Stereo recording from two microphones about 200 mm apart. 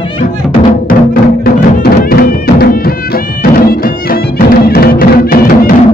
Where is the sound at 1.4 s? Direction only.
50° left (ahead or behind).